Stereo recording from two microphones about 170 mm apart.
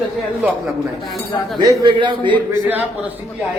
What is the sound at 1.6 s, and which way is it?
Speech, 25° right (ahead or behind).